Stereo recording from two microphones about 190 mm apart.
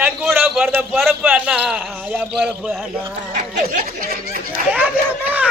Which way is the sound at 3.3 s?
50° right (ahead or behind).